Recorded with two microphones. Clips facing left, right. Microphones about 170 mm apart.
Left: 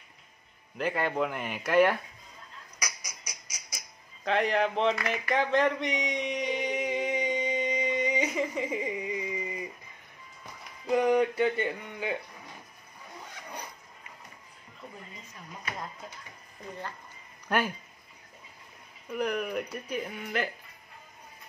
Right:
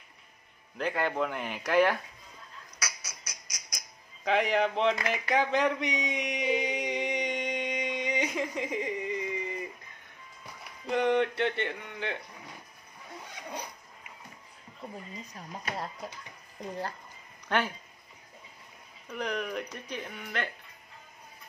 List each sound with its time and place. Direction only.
0.7 s speech: 5° left (ahead or behind)
2.8 s honk: 10° left (ahead or behind)
5.3 s a sound: centre (ahead or behind)
10.9 s speech: 5° left (ahead or behind)
15.2 s speech: 35° right (ahead or behind)
17.5 s speech: 10° left (ahead or behind)
19.0 s speech: 5° left (ahead or behind)